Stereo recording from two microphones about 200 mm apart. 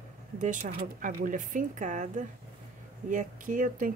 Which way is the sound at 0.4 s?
40° right (ahead or behind).